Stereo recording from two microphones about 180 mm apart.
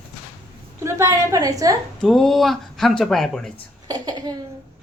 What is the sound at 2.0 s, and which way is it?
Speech, centre (ahead or behind).